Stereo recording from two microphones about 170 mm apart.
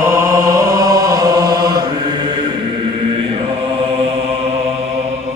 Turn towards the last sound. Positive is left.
turn(degrees=-35)  # may be behind; listen again after turning